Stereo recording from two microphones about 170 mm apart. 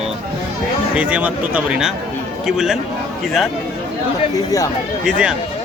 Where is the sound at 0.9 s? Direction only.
5° right (ahead or behind).